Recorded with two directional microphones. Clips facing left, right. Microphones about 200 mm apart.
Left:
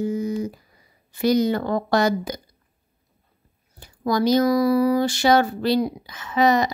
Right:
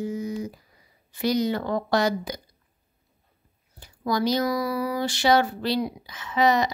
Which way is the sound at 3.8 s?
45° left (ahead or behind).